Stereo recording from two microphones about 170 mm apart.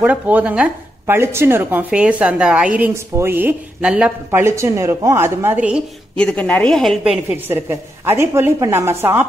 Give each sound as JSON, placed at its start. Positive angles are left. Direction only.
{"t": 0.0, "sound": "a woman's voice", "side_deg": -10}
{"t": 6.1, "sound": "a woman's voice", "side_deg": 5}